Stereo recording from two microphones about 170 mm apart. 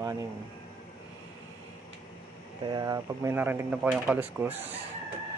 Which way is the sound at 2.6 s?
25° right (ahead or behind).